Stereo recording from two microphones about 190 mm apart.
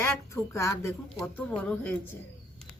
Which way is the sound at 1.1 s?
5° left (ahead or behind).